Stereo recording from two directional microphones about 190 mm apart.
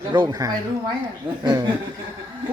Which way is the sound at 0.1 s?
20° right (ahead or behind).